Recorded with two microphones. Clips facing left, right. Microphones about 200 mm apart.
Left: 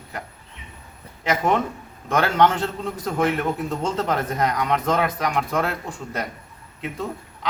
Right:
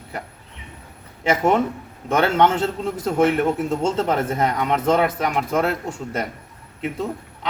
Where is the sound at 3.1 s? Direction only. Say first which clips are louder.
Right 4 dB; 5° right (ahead or behind).